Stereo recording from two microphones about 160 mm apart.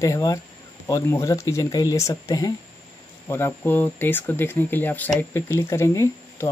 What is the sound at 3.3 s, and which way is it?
Speech, 15° left (ahead or behind).